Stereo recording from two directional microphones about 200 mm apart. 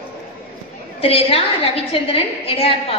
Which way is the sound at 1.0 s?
30° left (ahead or behind).